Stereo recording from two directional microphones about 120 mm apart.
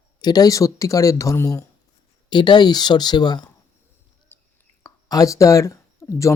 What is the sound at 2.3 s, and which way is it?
Speech, 40° left (ahead or behind).